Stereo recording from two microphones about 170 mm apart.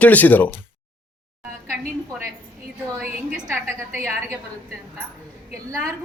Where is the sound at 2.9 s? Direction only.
15° right (ahead or behind).